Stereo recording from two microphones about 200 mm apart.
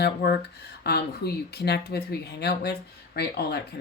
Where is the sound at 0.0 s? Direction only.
55° left (ahead or behind).